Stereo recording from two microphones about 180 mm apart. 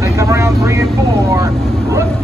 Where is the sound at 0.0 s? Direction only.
15° right (ahead or behind).